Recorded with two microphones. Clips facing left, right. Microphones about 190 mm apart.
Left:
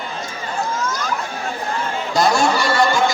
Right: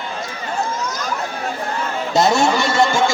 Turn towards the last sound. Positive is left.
turn(degrees=-25)  # may be behind; listen again after turning